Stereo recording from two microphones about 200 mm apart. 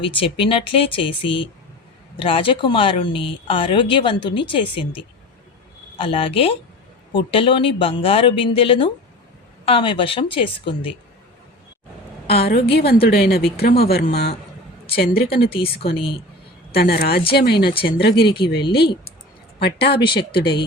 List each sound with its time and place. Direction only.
0.1 s speech: 25° left (ahead or behind)
6.0 s speech: 25° left (ahead or behind)
12.3 s a woman's voice: 50° left (ahead or behind)
15.5 s speech: 30° left (ahead or behind)
16.7 s a woman's voice: 50° left (ahead or behind)